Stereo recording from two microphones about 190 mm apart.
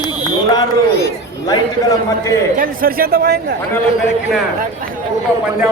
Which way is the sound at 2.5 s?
45° right (ahead or behind).